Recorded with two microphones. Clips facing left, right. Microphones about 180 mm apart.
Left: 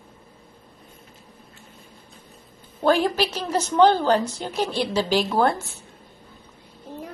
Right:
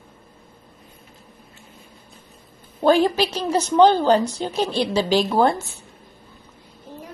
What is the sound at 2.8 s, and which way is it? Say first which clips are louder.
A woman's voice: right 3 dB; 15° right (ahead or behind).